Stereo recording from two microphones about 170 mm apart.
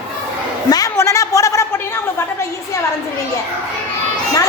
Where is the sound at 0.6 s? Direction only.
20° left (ahead or behind).